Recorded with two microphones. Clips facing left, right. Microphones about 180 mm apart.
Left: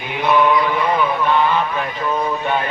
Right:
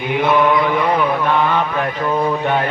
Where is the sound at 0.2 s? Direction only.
55° right (ahead or behind).